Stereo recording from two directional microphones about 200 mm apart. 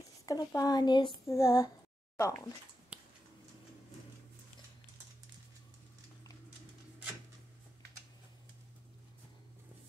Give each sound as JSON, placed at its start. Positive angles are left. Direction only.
{"t": 0.3, "sound": "speech", "side_deg": 15}